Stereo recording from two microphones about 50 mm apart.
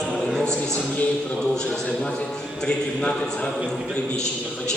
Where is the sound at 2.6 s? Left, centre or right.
Centre.